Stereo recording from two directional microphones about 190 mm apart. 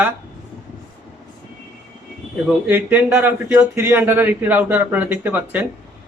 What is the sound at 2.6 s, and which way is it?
Speech, 10° right (ahead or behind).